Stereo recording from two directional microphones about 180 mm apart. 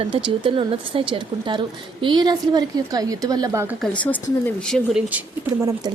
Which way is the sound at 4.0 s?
10° left (ahead or behind).